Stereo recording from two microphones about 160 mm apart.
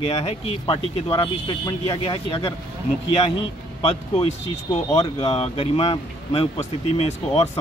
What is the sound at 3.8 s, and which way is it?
Speech, 40° left (ahead or behind).